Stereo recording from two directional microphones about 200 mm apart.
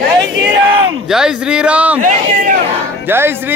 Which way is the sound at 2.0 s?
40° right (ahead or behind).